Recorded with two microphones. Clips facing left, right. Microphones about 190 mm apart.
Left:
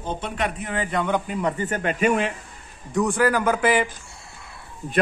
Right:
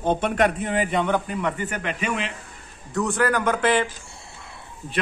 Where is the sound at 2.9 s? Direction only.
10° left (ahead or behind).